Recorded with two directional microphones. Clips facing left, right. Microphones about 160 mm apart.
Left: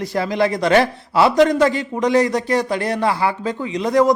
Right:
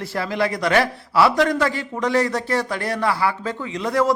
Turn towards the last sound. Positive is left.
turn(degrees=20)  # may be behind; listen again after turning